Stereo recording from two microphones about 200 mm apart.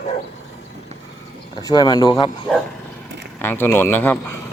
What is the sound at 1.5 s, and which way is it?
Speech, 20° left (ahead or behind).